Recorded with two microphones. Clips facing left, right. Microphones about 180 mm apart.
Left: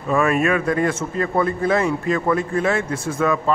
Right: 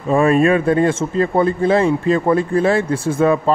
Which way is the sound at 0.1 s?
30° right (ahead or behind).